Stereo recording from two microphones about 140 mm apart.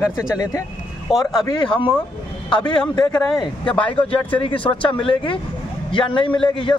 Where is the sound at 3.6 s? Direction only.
10° left (ahead or behind).